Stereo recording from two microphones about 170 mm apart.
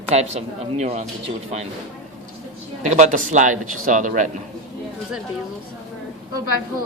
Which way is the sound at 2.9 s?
45° right (ahead or behind).